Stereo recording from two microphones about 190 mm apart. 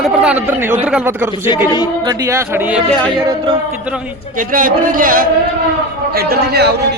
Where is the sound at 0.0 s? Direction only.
5° right (ahead or behind).